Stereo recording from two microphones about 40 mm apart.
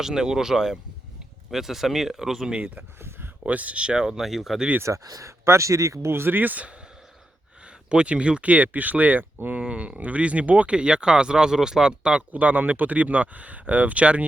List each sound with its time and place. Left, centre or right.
0.0 s speech: centre
2.5 s speech: right
3.8 s speech: centre
4.2 s speech: centre
6.1 s speech: right
7.6 s speech: right
9.6 s speech: right
10.8 s speech: right
12.3 s speech: right